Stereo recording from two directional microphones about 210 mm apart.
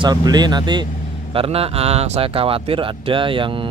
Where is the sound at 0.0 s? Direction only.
20° right (ahead or behind).